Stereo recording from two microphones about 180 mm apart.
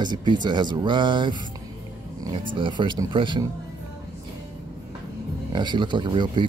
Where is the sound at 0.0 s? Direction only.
25° right (ahead or behind).